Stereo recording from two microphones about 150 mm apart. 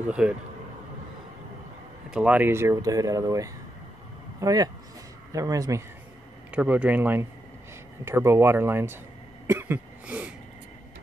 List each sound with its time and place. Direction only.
0.2 s speech: 5° right (ahead or behind)
2.0 s speech: 5° right (ahead or behind)
6.5 s speech: 10° right (ahead or behind)
9.5 s a sound: 15° right (ahead or behind)